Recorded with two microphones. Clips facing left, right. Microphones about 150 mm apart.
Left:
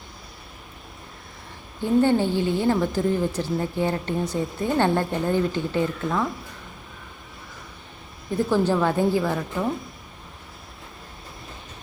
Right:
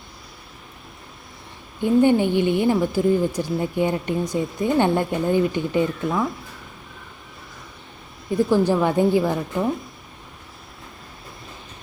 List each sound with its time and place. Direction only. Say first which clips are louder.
1.8 s speech: right 3 dB; 15° right (ahead or behind)
8.4 s speech: right 1 dB; 15° right (ahead or behind)